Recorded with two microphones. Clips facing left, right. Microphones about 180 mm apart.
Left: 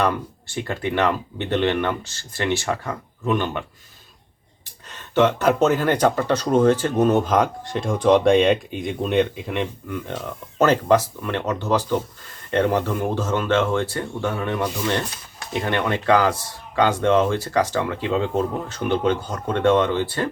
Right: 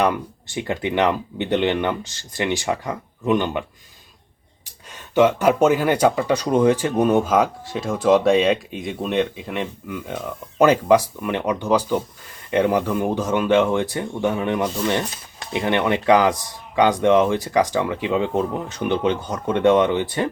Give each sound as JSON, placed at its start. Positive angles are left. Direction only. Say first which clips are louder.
{"t": 0.0, "sound": "speech", "louder": "right 2 dB", "side_deg": -15}
{"t": 4.9, "sound": "speech", "louder": "right 2 dB", "side_deg": -10}